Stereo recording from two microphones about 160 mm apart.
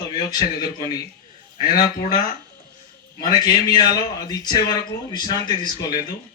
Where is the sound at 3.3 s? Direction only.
25° left (ahead or behind).